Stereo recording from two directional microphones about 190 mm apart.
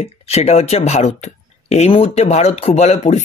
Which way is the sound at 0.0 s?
35° left (ahead or behind).